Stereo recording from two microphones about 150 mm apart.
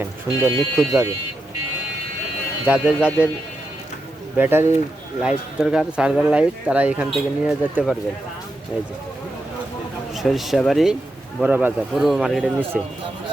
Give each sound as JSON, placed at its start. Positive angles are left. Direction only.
{"t": 0.0, "sound": "speech", "side_deg": -15}
{"t": 2.6, "sound": "speech", "side_deg": -10}
{"t": 4.4, "sound": "speech", "side_deg": -15}
{"t": 10.2, "sound": "speech", "side_deg": 0}